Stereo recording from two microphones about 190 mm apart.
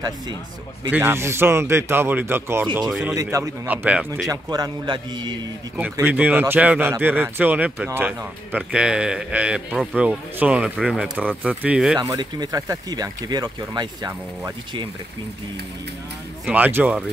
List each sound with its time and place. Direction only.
0.9 s speech: 15° right (ahead or behind)
3.2 s speech: 15° right (ahead or behind)
4.3 s speech: 20° right (ahead or behind)
5.8 s speech: 10° right (ahead or behind)
12.0 s speech: 20° right (ahead or behind)
16.4 s speech: 10° right (ahead or behind)